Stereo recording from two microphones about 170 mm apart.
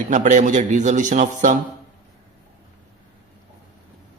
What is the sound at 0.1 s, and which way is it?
A man's voice, 45° right (ahead or behind).